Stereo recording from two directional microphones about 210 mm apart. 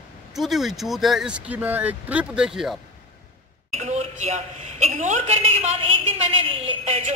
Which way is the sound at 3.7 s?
35° right (ahead or behind).